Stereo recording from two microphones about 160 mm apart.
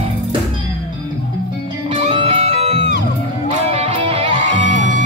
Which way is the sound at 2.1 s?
35° right (ahead or behind).